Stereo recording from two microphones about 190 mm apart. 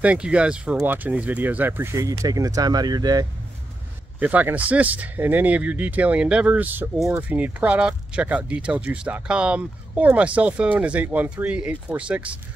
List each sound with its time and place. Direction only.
0.0 s speech: 5° right (ahead or behind)
4.2 s speech: 10° right (ahead or behind)